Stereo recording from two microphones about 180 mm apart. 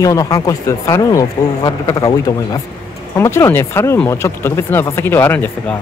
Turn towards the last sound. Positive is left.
turn(degrees=10)  # may be behind; listen again after turning